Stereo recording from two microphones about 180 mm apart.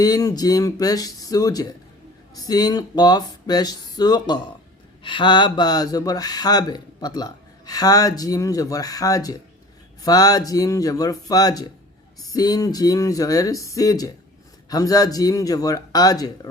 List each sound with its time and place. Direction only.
0.0 s speech: 20° left (ahead or behind)